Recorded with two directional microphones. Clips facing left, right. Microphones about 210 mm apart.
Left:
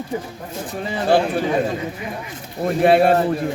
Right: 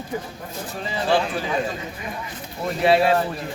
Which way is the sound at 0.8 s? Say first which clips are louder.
Left 4 dB; 55° left (ahead or behind).